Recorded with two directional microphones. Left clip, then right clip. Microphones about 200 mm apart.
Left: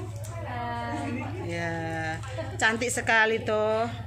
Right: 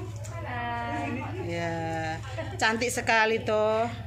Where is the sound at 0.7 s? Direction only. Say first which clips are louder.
Right 1 dB; centre (ahead or behind).